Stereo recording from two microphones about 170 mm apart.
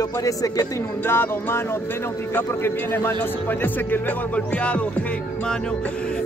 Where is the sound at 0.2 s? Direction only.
20° left (ahead or behind).